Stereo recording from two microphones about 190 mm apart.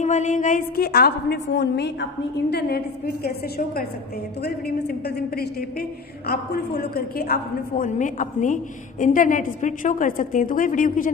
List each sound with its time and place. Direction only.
0.0 s a woman's voice: 40° left (ahead or behind); by 2.0 s 65° left (ahead or behind)
3.3 s a woman's voice: 55° left (ahead or behind)